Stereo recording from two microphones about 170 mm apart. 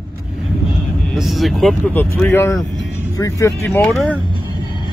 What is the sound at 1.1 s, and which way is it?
Speech, centre (ahead or behind).